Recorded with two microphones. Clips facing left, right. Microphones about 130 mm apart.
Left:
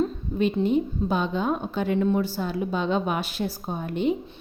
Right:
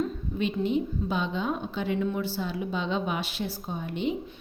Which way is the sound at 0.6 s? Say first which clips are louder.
Left 4 dB; 45° left (ahead or behind).